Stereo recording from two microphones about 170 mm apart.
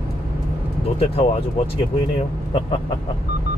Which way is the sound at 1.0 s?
35° left (ahead or behind).